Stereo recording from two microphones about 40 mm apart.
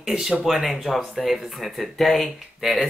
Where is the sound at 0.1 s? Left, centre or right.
Centre.